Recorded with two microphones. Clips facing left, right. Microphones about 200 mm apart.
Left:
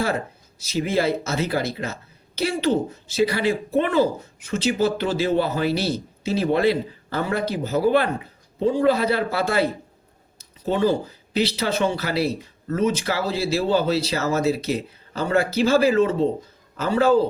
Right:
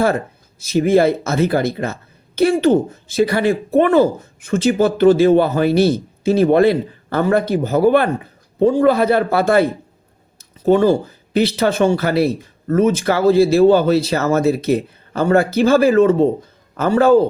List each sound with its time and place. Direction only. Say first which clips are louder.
0.6 s speech: right 9 dB; 55° right (ahead or behind)
10.3 s a sound: right 10 dB; 50° right (ahead or behind)
11.3 s speech: right 7 dB; 50° right (ahead or behind)